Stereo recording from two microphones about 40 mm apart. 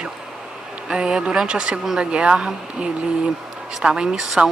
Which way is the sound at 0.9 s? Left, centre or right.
Centre.